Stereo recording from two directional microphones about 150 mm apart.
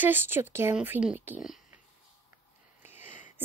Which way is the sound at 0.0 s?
15° right (ahead or behind).